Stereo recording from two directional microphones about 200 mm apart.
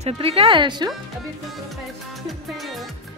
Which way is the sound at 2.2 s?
Centre (ahead or behind).